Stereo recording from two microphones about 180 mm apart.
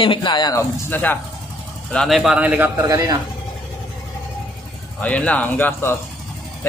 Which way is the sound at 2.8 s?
20° right (ahead or behind).